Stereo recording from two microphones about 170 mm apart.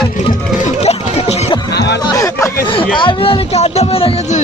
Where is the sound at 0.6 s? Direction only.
40° left (ahead or behind).